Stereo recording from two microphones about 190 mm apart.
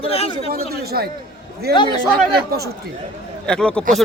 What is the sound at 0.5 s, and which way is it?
Speech, 55° right (ahead or behind).